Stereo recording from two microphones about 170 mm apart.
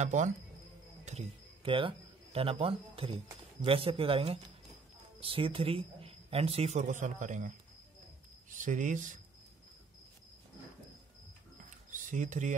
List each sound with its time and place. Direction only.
0.0 s speech: 45° right (ahead or behind)
11.9 s speech: 50° right (ahead or behind)